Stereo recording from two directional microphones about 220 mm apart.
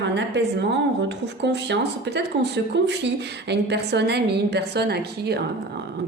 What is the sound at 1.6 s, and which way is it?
Speech, 50° right (ahead or behind).